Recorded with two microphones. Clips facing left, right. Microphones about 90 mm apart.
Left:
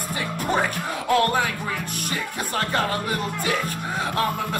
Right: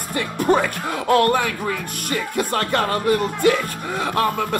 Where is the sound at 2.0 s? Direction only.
60° right (ahead or behind).